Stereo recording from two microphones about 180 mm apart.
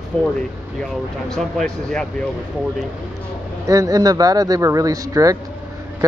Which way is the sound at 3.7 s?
20° right (ahead or behind).